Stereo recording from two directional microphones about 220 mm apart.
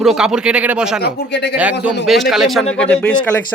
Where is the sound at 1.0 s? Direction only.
50° left (ahead or behind).